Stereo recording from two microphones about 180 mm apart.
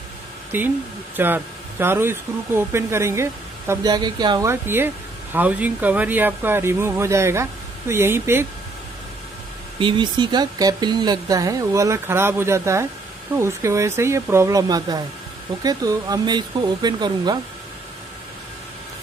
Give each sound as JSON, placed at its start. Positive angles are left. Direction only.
{"t": 0.5, "sound": "speech", "side_deg": -10}
{"t": 9.8, "sound": "speech", "side_deg": -25}